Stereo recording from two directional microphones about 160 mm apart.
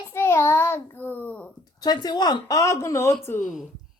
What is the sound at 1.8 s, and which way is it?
A child's voice, 25° left (ahead or behind).